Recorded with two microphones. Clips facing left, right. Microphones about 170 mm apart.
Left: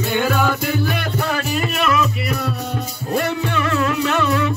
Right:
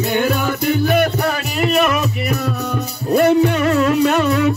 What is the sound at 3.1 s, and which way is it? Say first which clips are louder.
Music: right 8 dB; 55° right (ahead or behind).